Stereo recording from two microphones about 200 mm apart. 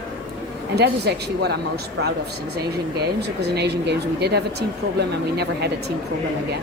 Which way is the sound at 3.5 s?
55° right (ahead or behind).